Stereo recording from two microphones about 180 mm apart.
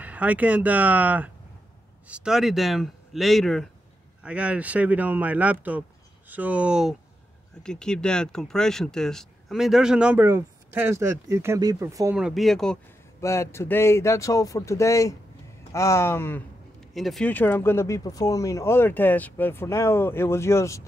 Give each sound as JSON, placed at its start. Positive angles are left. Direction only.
{"t": 0.0, "sound": "speech", "side_deg": -10}
{"t": 12.2, "sound": "speech", "side_deg": 0}
{"t": 13.2, "sound": "speech", "side_deg": 15}
{"t": 16.9, "sound": "speech", "side_deg": 0}